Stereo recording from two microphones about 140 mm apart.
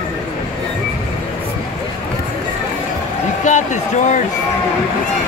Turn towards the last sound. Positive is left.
turn(degrees=60)  # may be behind; listen again after turning